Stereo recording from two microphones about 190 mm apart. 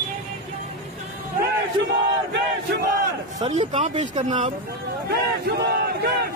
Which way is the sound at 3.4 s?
35° right (ahead or behind).